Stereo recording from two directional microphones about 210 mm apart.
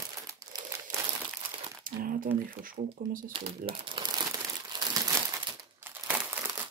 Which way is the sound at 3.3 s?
25° right (ahead or behind).